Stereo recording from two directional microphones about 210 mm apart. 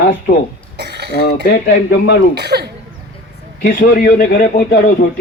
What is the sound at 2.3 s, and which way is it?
Speech, 50° right (ahead or behind).